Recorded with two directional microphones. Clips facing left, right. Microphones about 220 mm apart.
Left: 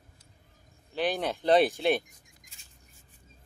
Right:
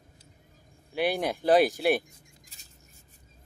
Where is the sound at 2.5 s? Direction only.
40° right (ahead or behind).